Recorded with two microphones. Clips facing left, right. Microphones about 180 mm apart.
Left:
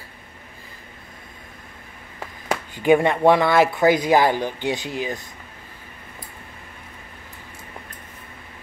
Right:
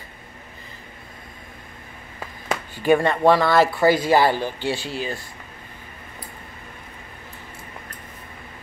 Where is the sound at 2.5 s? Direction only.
15° left (ahead or behind).